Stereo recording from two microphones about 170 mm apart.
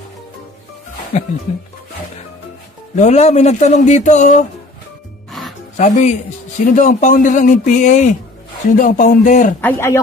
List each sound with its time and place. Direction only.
3.0 s speech: 40° left (ahead or behind)
5.8 s speech: 45° left (ahead or behind)
9.6 s a man's voice: 15° left (ahead or behind)